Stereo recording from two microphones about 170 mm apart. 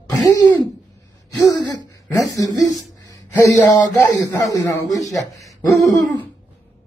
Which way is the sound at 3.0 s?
20° left (ahead or behind).